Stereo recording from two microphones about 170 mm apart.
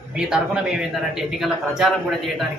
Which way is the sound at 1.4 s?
Centre (ahead or behind).